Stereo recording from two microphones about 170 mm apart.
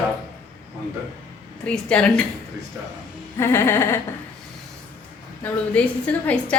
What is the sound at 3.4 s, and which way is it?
Speech, 15° left (ahead or behind).